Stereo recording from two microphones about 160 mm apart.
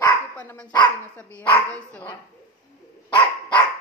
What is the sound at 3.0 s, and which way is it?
Dog, 30° left (ahead or behind).